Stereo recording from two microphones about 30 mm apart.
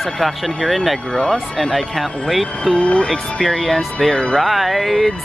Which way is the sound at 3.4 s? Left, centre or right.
Centre.